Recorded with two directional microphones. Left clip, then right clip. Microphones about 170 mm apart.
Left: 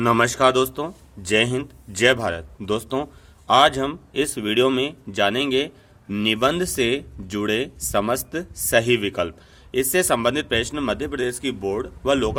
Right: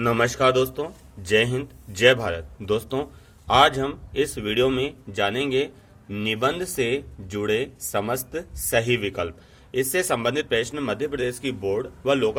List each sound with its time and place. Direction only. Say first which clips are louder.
0.0 s speech: left 3 dB; 40° left (ahead or behind)